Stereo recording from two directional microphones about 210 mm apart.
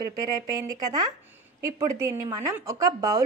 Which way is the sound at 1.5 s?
15° right (ahead or behind).